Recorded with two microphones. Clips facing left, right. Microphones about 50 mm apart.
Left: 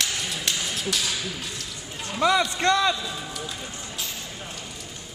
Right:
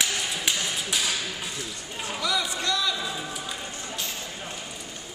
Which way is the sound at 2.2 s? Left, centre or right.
Left.